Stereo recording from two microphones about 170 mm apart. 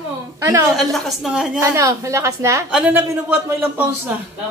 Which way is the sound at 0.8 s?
Centre (ahead or behind).